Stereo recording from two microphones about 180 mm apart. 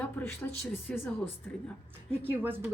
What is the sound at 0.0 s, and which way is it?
Speech, 10° left (ahead or behind).